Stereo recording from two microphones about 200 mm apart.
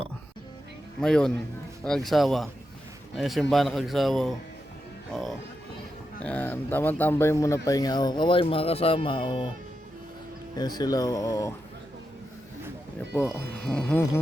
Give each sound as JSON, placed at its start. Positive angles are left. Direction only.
{"t": 0.9, "sound": "a man's voice", "side_deg": 5}
{"t": 10.5, "sound": "speech", "side_deg": 20}
{"t": 13.7, "sound": "a man's voice", "side_deg": 5}